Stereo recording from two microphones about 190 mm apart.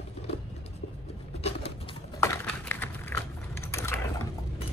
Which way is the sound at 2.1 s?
15° left (ahead or behind).